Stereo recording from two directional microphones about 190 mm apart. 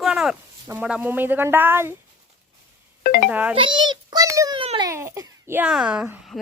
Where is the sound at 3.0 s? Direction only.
50° left (ahead or behind).